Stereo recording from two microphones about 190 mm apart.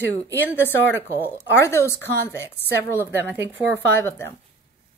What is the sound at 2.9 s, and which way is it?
Speech, 10° right (ahead or behind).